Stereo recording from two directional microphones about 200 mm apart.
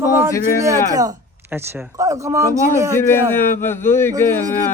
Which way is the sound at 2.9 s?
10° left (ahead or behind).